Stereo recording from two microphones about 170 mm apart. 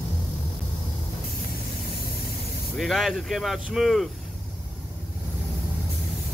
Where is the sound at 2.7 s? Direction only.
Centre (ahead or behind).